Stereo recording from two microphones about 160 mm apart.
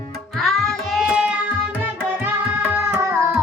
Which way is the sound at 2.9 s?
15° right (ahead or behind).